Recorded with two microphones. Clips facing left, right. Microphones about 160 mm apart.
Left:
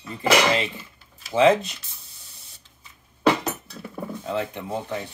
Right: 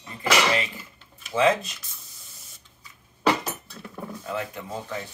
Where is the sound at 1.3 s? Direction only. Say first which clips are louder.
Left 4 dB; 25° left (ahead or behind).